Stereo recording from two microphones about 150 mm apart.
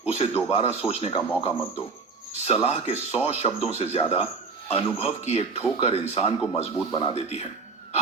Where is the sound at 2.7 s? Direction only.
45° left (ahead or behind).